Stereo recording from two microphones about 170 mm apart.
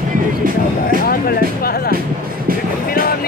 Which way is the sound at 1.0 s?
60° left (ahead or behind).